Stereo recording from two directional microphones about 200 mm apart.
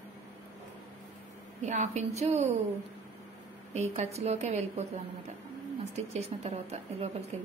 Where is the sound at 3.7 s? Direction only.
35° right (ahead or behind).